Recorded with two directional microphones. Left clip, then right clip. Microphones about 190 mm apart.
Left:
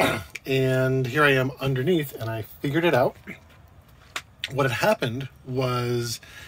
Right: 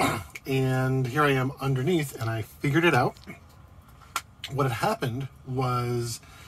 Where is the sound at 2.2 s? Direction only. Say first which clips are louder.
Left 1 dB; 30° right (ahead or behind).